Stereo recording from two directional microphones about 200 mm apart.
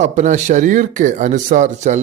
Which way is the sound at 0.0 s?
35° right (ahead or behind).